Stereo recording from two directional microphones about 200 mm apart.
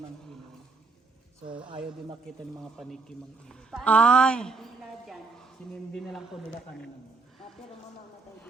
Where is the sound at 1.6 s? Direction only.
25° right (ahead or behind).